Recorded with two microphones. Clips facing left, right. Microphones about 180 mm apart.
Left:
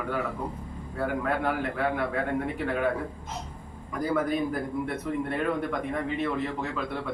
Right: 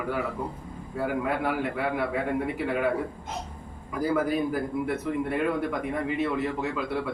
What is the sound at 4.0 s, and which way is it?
Speech, 5° right (ahead or behind).